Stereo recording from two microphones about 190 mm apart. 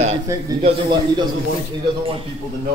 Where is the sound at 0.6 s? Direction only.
25° right (ahead or behind).